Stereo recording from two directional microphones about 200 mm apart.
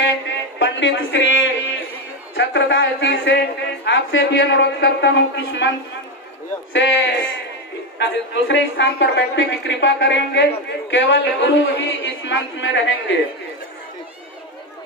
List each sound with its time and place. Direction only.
0.6 s a sound: 70° left (ahead or behind)
2.3 s a woman's voice: 70° left (ahead or behind)
6.7 s a woman's voice: 70° left (ahead or behind)